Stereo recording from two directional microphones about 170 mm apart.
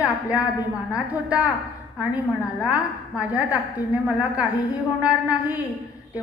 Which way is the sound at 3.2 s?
5° right (ahead or behind).